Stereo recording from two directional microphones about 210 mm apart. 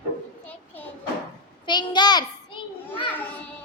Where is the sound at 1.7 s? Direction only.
20° left (ahead or behind).